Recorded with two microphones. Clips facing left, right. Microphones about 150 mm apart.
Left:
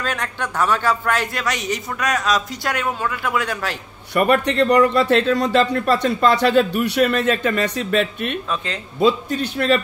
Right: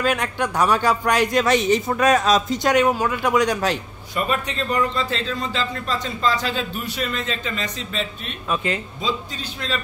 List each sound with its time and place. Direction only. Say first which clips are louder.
0.0 s a man's voice: right 4 dB; 10° right (ahead or behind)
4.1 s a man's voice: left 7 dB; 65° left (ahead or behind)